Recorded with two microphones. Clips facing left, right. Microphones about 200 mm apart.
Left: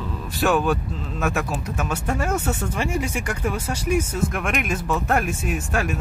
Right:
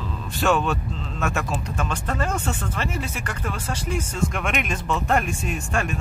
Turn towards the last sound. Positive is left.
turn(degrees=5)  # may be behind; listen again after turning